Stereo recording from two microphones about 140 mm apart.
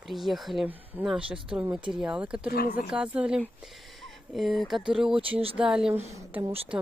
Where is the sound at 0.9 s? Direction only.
15° right (ahead or behind).